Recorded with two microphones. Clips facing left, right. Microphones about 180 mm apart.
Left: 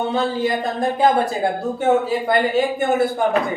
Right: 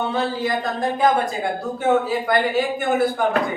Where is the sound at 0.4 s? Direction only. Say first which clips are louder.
Left 2 dB; 25° left (ahead or behind).